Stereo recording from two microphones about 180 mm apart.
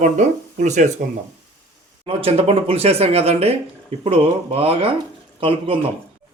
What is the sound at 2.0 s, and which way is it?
A man's voice, 30° right (ahead or behind).